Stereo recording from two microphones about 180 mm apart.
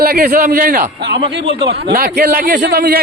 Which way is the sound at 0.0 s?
55° right (ahead or behind).